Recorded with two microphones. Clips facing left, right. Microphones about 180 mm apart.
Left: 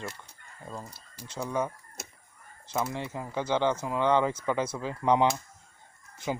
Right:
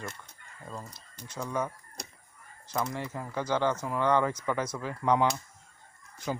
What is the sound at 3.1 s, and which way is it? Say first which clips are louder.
Speech: left 1 dB; 20° left (ahead or behind).